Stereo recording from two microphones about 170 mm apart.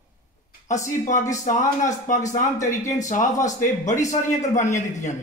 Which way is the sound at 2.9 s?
45° left (ahead or behind).